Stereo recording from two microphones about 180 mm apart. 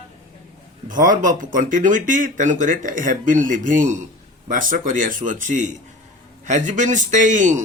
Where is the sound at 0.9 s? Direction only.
45° right (ahead or behind).